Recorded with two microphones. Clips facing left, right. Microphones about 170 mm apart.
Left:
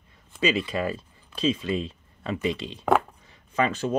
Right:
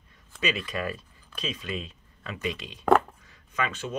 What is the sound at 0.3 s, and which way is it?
Speech, 25° left (ahead or behind).